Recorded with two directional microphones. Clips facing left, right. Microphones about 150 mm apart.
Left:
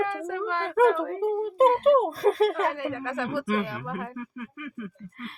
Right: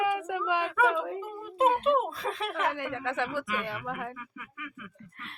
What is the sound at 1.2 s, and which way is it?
Speech, 40° left (ahead or behind).